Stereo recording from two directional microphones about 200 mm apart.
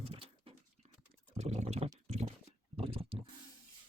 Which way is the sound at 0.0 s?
30° right (ahead or behind).